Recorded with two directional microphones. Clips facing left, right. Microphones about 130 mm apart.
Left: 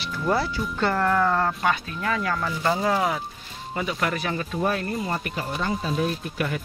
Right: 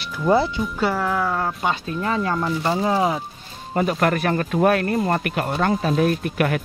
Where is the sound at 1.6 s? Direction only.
25° right (ahead or behind).